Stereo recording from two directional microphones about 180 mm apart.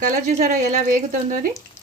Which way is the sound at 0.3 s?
45° right (ahead or behind).